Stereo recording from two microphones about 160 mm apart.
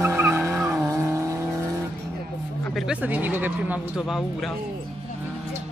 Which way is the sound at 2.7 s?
5° right (ahead or behind).